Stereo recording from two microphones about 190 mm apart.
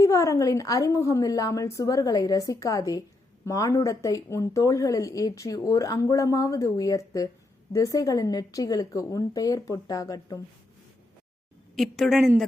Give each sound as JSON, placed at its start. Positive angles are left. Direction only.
{"t": 0.0, "sound": "a woman's voice", "side_deg": 15}
{"t": 11.7, "sound": "a woman's voice", "side_deg": 0}